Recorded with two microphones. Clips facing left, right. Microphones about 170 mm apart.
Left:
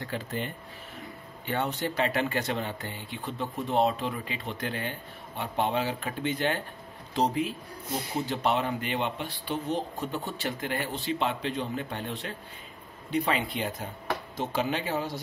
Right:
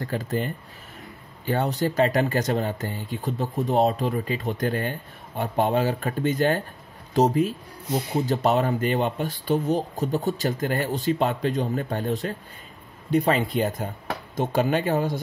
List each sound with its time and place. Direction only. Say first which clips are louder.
0.0 s speech: right 6 dB; 40° right (ahead or behind)